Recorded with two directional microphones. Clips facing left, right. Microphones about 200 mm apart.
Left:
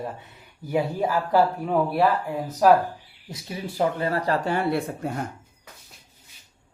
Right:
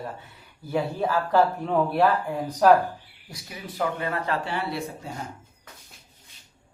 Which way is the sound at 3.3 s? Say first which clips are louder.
Left 6 dB; 25° left (ahead or behind).